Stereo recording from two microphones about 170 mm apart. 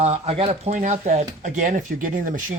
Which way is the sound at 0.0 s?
35° right (ahead or behind).